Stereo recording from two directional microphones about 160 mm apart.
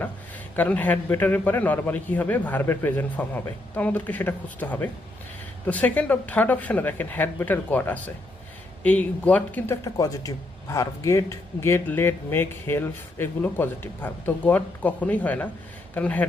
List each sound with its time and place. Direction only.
0.5 s speech: 10° left (ahead or behind)
9.8 s speech: 20° left (ahead or behind)